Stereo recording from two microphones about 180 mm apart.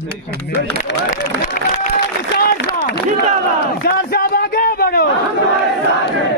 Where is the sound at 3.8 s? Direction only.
55° left (ahead or behind).